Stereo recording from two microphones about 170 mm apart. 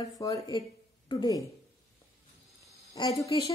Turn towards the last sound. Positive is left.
turn(degrees=20)  # may be behind; listen again after turning